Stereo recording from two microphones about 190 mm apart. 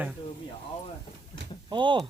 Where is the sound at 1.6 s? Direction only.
25° right (ahead or behind).